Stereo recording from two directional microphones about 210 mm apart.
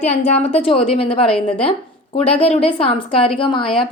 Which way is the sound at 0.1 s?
30° left (ahead or behind).